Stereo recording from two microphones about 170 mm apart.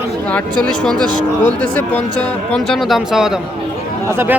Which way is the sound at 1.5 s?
10° left (ahead or behind).